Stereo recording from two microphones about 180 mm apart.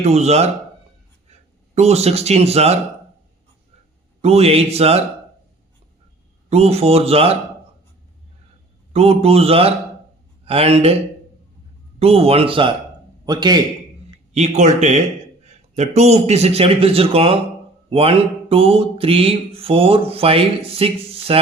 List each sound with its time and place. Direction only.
0.0 s a man's voice: 35° right (ahead or behind)
4.2 s speech: 35° right (ahead or behind)
6.5 s speech: 35° right (ahead or behind)
8.9 s speech: 35° right (ahead or behind)
11.9 s a man's voice: 35° right (ahead or behind)
14.3 s speech: 40° right (ahead or behind)